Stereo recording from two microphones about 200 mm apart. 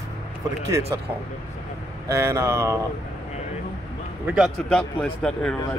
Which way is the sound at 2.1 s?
15° right (ahead or behind).